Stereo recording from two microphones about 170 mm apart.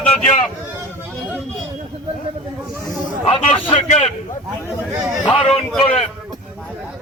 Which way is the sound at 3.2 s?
35° left (ahead or behind).